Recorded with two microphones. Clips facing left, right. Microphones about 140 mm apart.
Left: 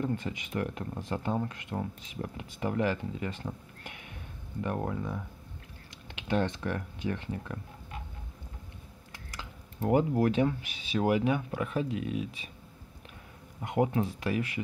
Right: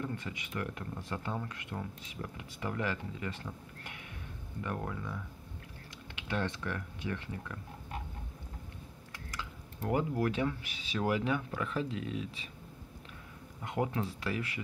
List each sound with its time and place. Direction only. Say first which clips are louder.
0.0 s speech: left 6 dB; 25° left (ahead or behind)
9.1 s speech: right 1 dB; 25° left (ahead or behind)
13.6 s speech: left 6 dB; 25° left (ahead or behind)